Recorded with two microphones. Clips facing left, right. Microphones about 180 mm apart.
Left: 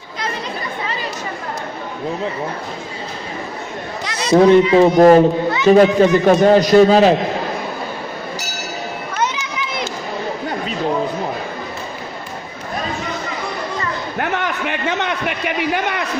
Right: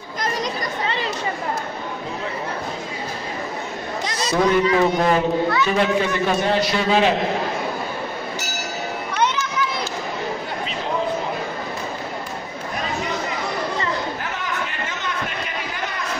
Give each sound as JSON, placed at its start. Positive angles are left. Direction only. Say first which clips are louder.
{"t": 4.3, "sound": "speech", "louder": "left 8 dB", "side_deg": 25}
{"t": 4.9, "sound": "a man's voice", "louder": "left 9 dB", "side_deg": 40}
{"t": 9.1, "sound": "children playing", "louder": "right 1 dB", "side_deg": 10}
{"t": 14.1, "sound": "a sound", "louder": "left 6 dB", "side_deg": 65}